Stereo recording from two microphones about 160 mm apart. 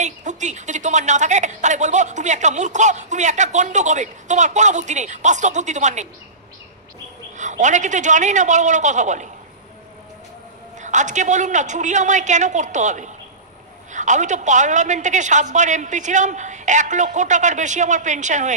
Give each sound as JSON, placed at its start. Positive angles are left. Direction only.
{"t": 0.0, "sound": "a woman's voice", "side_deg": -50}
{"t": 7.3, "sound": "a woman's voice", "side_deg": -50}
{"t": 10.8, "sound": "a woman's voice", "side_deg": -50}